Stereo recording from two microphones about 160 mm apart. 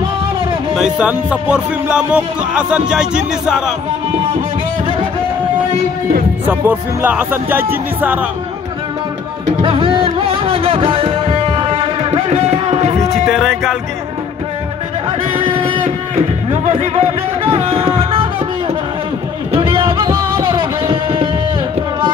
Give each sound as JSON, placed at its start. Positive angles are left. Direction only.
{"t": 0.7, "sound": "speech", "side_deg": -5}
{"t": 6.4, "sound": "speech", "side_deg": -10}
{"t": 9.6, "sound": "music", "side_deg": -30}
{"t": 13.3, "sound": "music", "side_deg": 0}
{"t": 15.3, "sound": "music", "side_deg": -30}
{"t": 19.5, "sound": "a sound", "side_deg": -30}
{"t": 20.4, "sound": "music", "side_deg": -30}